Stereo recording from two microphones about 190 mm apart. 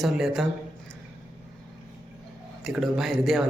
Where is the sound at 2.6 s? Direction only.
Centre (ahead or behind).